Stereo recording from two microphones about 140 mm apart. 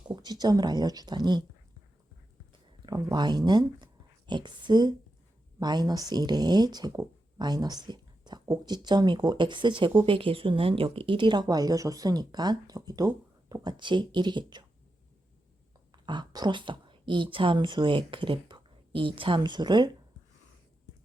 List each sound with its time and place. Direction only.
0.2 s speech: 30° right (ahead or behind)
2.5 s a sound: 30° right (ahead or behind)
4.3 s speech: 35° right (ahead or behind)
15.9 s speech: 30° right (ahead or behind)